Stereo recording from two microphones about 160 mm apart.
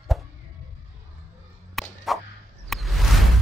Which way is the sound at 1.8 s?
Centre (ahead or behind).